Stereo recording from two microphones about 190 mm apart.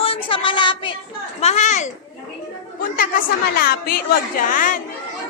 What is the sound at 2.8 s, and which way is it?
A woman's voice, 45° left (ahead or behind).